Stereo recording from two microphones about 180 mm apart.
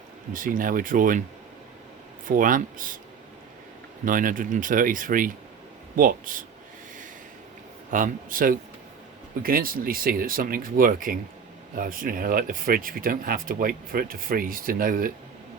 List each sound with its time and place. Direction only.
0.3 s speech: 50° right (ahead or behind)
2.2 s speech: 50° right (ahead or behind)
4.0 s speech: 50° right (ahead or behind)
7.9 s speech: 45° right (ahead or behind)